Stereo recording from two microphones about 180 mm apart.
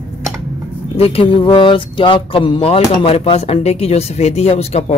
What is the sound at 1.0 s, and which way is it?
Speech, 30° left (ahead or behind).